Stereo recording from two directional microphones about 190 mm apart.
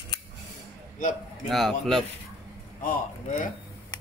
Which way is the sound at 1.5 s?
Centre (ahead or behind).